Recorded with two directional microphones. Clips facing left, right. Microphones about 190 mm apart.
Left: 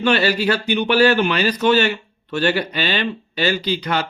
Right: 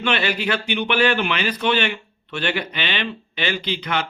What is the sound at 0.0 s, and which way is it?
A man's voice, 40° left (ahead or behind).